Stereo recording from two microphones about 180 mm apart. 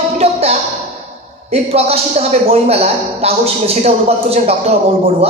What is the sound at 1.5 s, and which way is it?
Speech, 35° right (ahead or behind).